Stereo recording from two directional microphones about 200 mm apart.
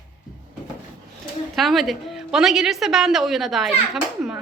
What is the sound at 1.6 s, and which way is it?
A woman's voice, centre (ahead or behind).